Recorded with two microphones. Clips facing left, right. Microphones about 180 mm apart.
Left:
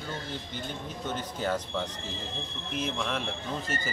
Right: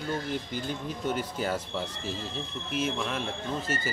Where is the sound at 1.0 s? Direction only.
10° right (ahead or behind).